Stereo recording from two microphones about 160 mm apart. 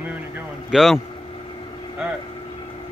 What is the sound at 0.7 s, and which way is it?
Speech, centre (ahead or behind).